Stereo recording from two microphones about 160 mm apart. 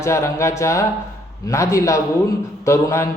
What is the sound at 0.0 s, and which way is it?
A man's voice, 15° left (ahead or behind).